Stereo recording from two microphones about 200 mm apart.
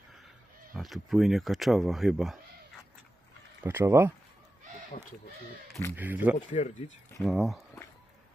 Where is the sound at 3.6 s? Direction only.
15° right (ahead or behind).